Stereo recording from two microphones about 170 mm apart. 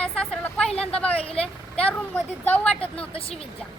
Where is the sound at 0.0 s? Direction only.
5° left (ahead or behind).